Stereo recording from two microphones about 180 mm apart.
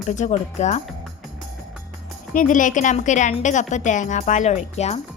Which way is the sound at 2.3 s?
45° left (ahead or behind).